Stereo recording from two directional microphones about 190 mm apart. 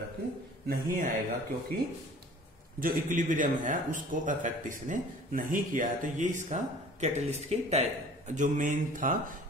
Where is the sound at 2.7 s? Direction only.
45° right (ahead or behind).